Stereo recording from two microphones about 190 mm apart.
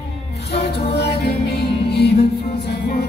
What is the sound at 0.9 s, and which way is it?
Music, 60° left (ahead or behind).